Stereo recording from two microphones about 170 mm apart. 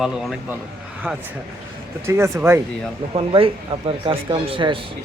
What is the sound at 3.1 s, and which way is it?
Speech, 30° right (ahead or behind).